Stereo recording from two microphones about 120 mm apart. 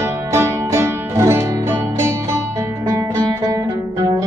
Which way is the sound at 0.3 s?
25° right (ahead or behind).